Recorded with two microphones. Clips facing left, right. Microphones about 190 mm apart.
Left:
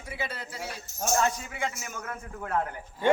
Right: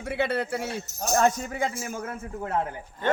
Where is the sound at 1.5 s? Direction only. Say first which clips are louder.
Right 5 dB; 30° right (ahead or behind).